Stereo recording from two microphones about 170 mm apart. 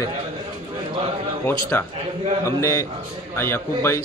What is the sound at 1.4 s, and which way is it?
A man's voice, 15° left (ahead or behind).